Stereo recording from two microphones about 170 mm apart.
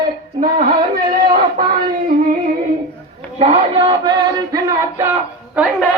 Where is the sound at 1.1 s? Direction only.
55° right (ahead or behind).